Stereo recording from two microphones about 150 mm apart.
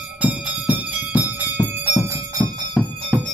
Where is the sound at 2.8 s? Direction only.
Centre (ahead or behind).